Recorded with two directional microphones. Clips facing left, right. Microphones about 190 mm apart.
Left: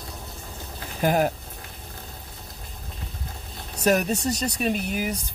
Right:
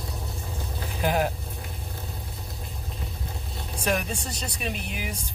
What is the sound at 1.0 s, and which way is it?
Speech, 45° left (ahead or behind).